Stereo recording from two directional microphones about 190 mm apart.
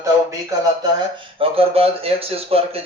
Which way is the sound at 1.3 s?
30° right (ahead or behind).